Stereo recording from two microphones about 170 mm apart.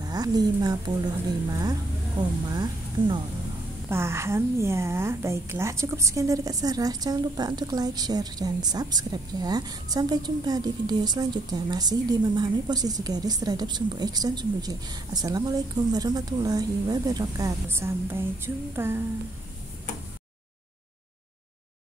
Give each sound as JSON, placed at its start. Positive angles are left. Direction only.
{"t": 0.0, "sound": "a woman's voice", "side_deg": -25}
{"t": 3.9, "sound": "a woman's voice", "side_deg": -15}